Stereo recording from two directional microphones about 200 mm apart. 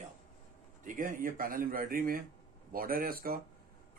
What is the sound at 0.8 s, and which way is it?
Speech, 40° right (ahead or behind).